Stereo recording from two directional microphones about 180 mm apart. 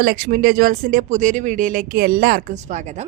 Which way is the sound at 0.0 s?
55° right (ahead or behind).